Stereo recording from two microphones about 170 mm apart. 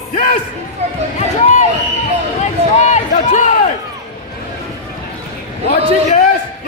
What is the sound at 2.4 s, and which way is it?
Run, 45° left (ahead or behind).